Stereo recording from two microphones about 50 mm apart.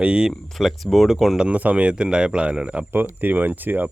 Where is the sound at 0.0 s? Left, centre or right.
Centre.